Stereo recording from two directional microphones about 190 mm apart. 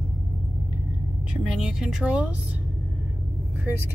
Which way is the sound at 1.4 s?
5° right (ahead or behind).